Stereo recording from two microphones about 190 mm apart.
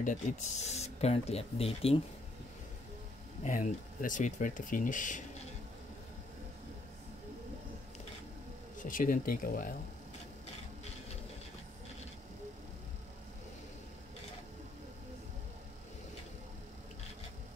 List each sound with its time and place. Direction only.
0.0 s speech: 40° left (ahead or behind)
3.4 s speech: 45° left (ahead or behind)
8.7 s speech: 45° left (ahead or behind)